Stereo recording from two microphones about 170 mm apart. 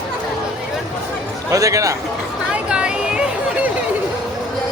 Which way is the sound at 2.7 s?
5° right (ahead or behind).